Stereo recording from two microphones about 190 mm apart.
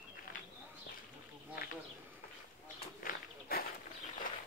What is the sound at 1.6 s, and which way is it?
Bee, 50° left (ahead or behind).